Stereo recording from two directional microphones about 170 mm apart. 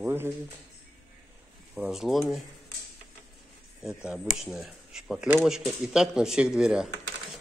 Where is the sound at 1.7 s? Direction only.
5° right (ahead or behind).